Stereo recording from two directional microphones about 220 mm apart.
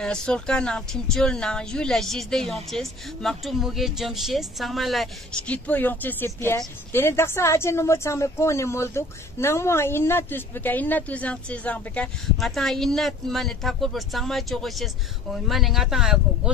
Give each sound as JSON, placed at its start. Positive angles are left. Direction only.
{"t": 0.0, "sound": "a woman's voice", "side_deg": 5}